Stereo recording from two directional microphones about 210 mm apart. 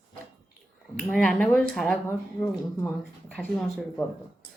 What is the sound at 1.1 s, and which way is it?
Speech, 5° left (ahead or behind).